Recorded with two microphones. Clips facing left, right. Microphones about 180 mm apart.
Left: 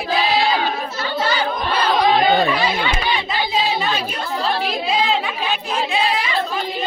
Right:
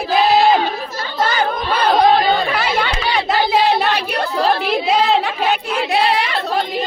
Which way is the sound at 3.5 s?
70° right (ahead or behind).